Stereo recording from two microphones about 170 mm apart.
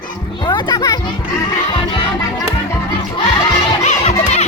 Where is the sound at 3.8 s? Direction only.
40° left (ahead or behind).